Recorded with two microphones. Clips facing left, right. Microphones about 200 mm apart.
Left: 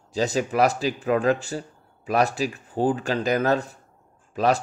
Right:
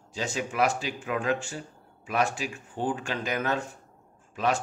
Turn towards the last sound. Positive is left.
turn(degrees=35)  # may be behind; listen again after turning